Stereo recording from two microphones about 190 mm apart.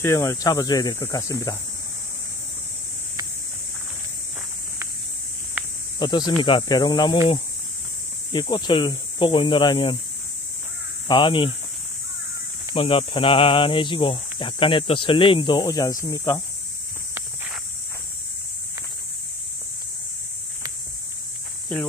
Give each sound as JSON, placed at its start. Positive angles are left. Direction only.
{"t": 0.0, "sound": "speech", "side_deg": 15}
{"t": 5.9, "sound": "speech", "side_deg": 20}
{"t": 11.1, "sound": "speech", "side_deg": 25}
{"t": 12.7, "sound": "speech", "side_deg": 25}